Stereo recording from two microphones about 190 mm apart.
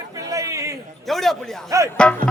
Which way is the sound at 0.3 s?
15° right (ahead or behind).